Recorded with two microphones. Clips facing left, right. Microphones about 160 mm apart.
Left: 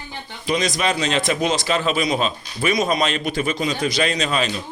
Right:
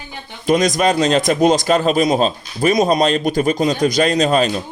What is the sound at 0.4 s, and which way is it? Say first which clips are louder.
A man's voice: right 7 dB; 45° right (ahead or behind).